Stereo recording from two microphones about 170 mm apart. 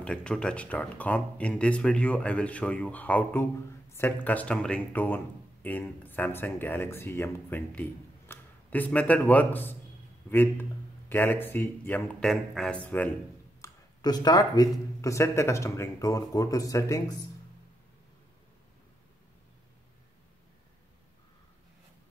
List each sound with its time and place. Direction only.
0.0 s speech: 5° left (ahead or behind)
13.6 s speech: 25° left (ahead or behind)